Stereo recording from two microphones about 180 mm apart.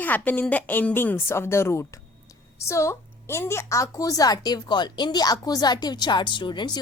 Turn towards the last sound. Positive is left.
turn(degrees=25)  # may be behind; listen again after turning